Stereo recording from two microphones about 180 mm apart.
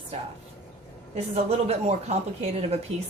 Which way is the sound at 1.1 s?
35° right (ahead or behind).